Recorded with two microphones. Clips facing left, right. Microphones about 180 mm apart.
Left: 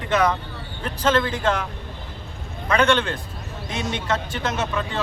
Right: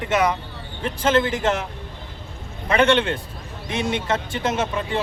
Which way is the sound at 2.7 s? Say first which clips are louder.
Right 2 dB; 25° right (ahead or behind).